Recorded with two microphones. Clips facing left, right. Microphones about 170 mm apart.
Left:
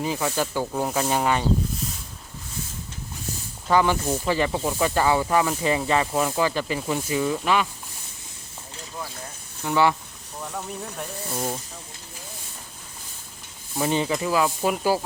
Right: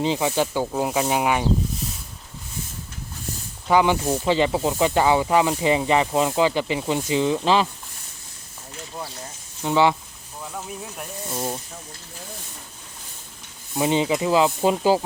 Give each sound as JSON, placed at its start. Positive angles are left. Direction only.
{"t": 0.0, "sound": "speech", "side_deg": -20}
{"t": 3.7, "sound": "speech", "side_deg": -15}
{"t": 9.6, "sound": "speech", "side_deg": -20}
{"t": 10.4, "sound": "speech", "side_deg": -5}
{"t": 13.7, "sound": "speech", "side_deg": -15}